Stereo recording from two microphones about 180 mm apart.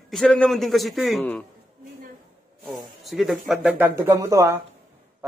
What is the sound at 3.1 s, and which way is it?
Speech, centre (ahead or behind).